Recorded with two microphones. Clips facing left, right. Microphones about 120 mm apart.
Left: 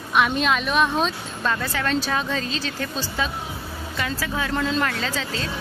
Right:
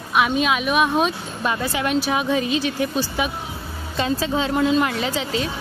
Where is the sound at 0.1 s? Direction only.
5° right (ahead or behind).